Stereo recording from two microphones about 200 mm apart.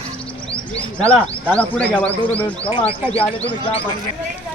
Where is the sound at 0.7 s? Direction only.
5° left (ahead or behind).